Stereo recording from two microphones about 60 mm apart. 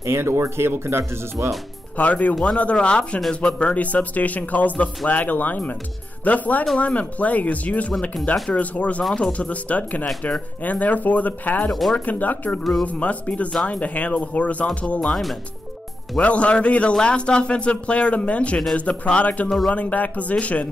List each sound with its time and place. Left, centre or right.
0.0 s speech: right
2.0 s speech: left
15.0 s speech: centre
16.2 s speech: left